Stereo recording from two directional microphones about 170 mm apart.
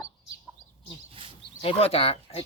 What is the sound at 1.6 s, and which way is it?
Speech, 35° left (ahead or behind).